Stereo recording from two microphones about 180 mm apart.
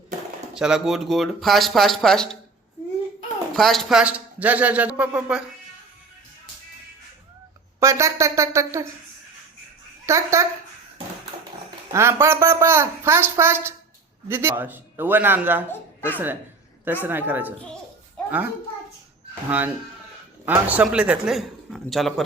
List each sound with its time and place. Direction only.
0.5 s speech: 5° right (ahead or behind)
3.5 s speech: centre (ahead or behind)
7.8 s speech: 15° right (ahead or behind)
10.1 s speech: 15° right (ahead or behind)
11.9 s a child's voice: 15° right (ahead or behind)